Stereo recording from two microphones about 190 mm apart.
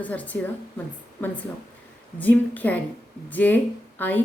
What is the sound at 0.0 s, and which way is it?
Speech, 10° left (ahead or behind).